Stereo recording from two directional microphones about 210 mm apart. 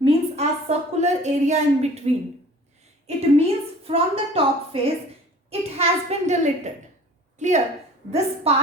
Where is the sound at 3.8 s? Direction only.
25° right (ahead or behind).